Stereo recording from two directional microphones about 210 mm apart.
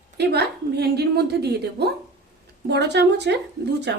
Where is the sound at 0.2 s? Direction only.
50° right (ahead or behind).